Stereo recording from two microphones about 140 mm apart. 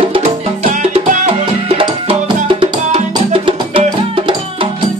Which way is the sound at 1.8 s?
35° right (ahead or behind).